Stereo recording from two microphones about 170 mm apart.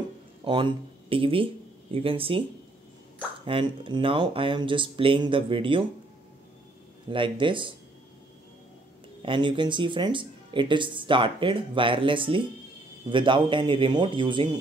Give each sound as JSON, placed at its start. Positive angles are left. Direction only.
{"t": 0.4, "sound": "speech", "side_deg": -30}
{"t": 3.4, "sound": "speech", "side_deg": -30}
{"t": 7.1, "sound": "speech", "side_deg": -30}
{"t": 9.2, "sound": "speech", "side_deg": -30}